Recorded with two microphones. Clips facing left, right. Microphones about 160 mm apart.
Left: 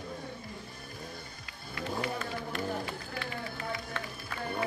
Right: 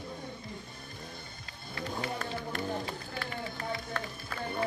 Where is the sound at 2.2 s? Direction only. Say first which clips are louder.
Even; 40° right (ahead or behind).